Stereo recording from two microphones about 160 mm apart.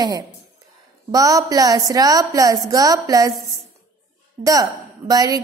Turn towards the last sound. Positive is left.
turn(degrees=-25)  # may be behind; listen again after turning